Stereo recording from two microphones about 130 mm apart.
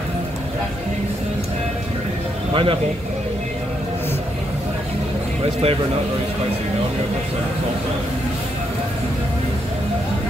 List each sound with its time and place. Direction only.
2.5 s speech: 45° right (ahead or behind)
5.4 s speech: 50° right (ahead or behind)